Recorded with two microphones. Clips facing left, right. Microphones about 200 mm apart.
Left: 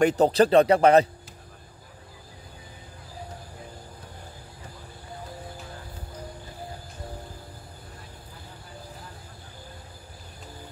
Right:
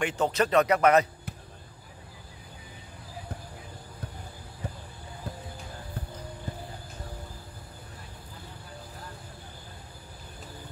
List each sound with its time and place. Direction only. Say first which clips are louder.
0.0 s speech: left 8 dB; 35° left (ahead or behind)